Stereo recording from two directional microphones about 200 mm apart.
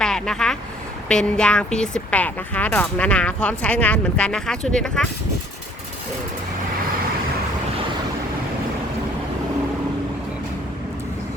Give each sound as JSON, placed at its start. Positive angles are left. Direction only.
{"t": 0.0, "sound": "vehicle", "side_deg": 5}
{"t": 1.0, "sound": "speech", "side_deg": 5}